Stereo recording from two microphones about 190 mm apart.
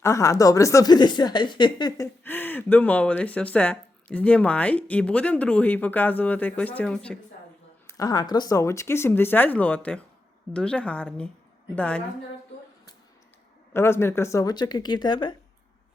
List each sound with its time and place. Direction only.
0.0 s speech: 15° left (ahead or behind)
2.2 s speech: 10° left (ahead or behind)
7.9 s speech: 20° left (ahead or behind)
13.7 s speech: 15° left (ahead or behind)